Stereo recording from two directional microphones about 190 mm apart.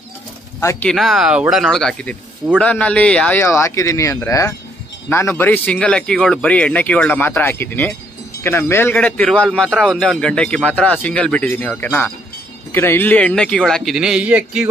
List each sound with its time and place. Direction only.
0.6 s speech: 15° left (ahead or behind)
0.8 s a man's voice: centre (ahead or behind)